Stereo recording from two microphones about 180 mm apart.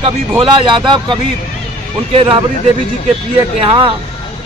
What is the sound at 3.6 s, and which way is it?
Speech, 30° right (ahead or behind).